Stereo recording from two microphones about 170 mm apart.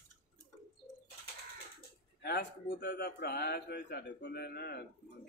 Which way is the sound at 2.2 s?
70° left (ahead or behind).